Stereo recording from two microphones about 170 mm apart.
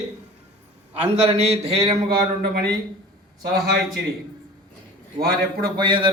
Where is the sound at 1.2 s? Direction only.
35° right (ahead or behind).